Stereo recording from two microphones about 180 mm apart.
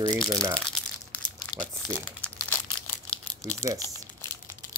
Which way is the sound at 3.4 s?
20° right (ahead or behind).